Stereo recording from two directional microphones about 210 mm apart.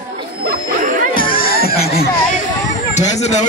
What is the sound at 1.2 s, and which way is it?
Music, 25° left (ahead or behind).